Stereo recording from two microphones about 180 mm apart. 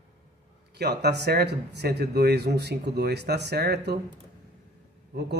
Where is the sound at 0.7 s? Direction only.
65° right (ahead or behind).